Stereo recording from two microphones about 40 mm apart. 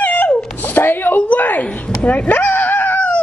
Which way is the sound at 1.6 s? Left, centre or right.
Left.